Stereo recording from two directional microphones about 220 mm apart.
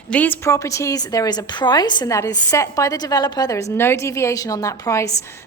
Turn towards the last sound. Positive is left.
turn(degrees=15)  # may be behind; listen again after turning